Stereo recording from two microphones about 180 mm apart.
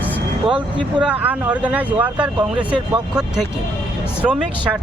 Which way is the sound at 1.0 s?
10° right (ahead or behind).